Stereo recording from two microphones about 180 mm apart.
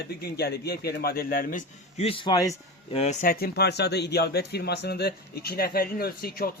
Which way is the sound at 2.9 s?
40° left (ahead or behind).